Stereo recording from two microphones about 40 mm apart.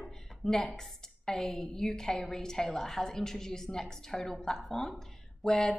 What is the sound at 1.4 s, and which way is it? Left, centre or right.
A woman's voice, centre.